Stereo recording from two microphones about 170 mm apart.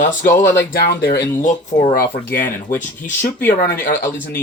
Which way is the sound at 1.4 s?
45° left (ahead or behind).